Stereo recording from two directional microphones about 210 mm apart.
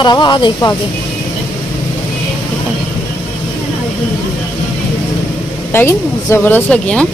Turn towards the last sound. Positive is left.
turn(degrees=5)  # may be behind; listen again after turning